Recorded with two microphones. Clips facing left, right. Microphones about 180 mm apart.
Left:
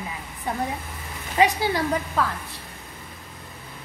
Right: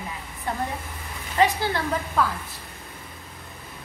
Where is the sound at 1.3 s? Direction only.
15° left (ahead or behind).